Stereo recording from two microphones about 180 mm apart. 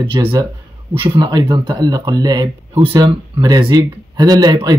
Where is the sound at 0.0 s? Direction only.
25° right (ahead or behind).